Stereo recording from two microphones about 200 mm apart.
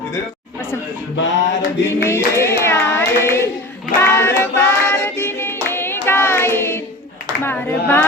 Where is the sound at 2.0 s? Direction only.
15° left (ahead or behind).